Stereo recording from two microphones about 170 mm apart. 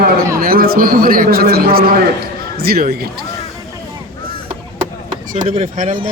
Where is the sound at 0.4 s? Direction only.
60° right (ahead or behind).